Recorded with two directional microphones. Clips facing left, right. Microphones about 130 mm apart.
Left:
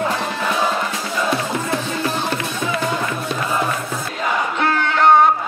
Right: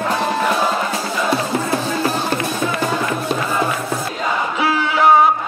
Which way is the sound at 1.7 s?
40° right (ahead or behind).